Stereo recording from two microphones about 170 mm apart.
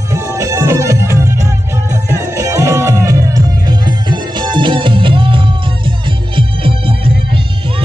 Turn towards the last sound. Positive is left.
turn(degrees=-30)  # may be behind; listen again after turning